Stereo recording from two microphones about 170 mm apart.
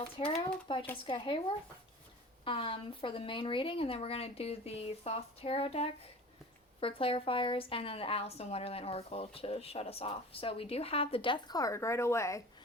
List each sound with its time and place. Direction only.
0.2 s a woman's voice: 30° left (ahead or behind)